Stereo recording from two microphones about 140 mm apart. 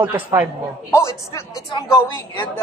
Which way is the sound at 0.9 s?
20° left (ahead or behind).